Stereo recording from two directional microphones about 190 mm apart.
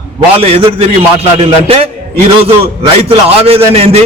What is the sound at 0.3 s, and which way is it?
A man's voice, 30° right (ahead or behind).